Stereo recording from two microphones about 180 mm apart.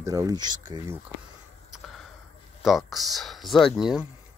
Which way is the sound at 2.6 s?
Centre (ahead or behind).